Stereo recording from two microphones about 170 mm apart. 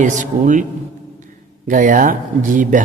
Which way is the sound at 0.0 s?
50° right (ahead or behind).